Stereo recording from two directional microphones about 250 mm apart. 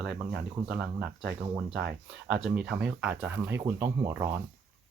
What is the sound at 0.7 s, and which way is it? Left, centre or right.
Speech, centre.